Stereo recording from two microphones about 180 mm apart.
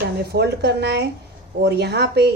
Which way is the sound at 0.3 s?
65° right (ahead or behind).